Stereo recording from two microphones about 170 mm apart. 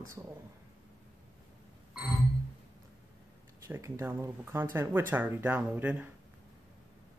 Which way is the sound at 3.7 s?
15° right (ahead or behind).